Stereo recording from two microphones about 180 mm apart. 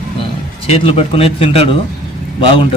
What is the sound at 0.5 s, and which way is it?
A man's voice, 35° left (ahead or behind).